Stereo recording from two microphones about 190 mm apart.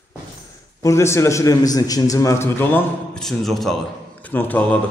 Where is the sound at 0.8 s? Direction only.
15° left (ahead or behind).